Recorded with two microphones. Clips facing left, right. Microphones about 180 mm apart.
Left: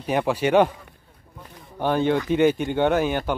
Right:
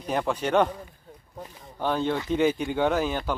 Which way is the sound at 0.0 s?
5° left (ahead or behind).